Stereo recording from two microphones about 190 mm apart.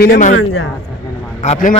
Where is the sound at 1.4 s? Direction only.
40° left (ahead or behind).